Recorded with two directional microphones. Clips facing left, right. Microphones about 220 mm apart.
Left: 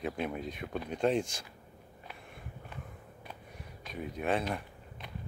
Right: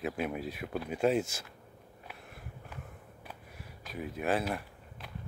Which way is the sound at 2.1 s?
5° right (ahead or behind).